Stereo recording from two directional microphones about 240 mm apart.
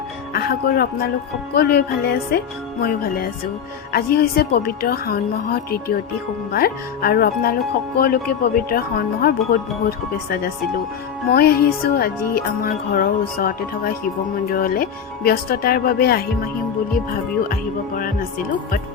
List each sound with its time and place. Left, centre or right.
0.3 s speech: left
17.5 s speech: left